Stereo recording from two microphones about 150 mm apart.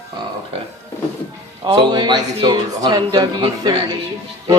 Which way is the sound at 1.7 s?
30° right (ahead or behind).